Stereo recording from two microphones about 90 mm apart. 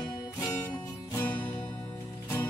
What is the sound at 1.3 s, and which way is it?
Music, 20° left (ahead or behind).